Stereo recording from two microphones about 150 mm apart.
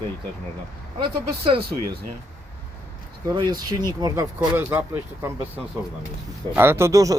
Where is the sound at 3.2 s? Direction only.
30° right (ahead or behind).